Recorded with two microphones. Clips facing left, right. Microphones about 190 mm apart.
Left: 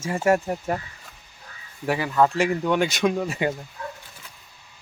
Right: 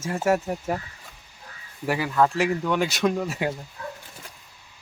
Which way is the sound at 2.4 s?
Centre (ahead or behind).